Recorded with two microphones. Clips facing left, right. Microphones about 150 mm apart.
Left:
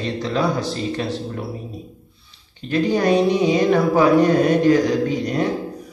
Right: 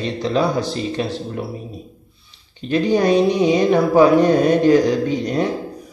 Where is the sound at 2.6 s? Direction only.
20° right (ahead or behind).